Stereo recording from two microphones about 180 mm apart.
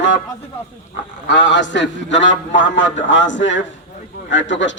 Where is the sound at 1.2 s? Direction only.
90° left.